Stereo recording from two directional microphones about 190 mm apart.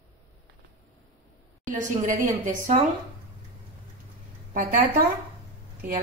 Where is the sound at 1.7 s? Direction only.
40° right (ahead or behind).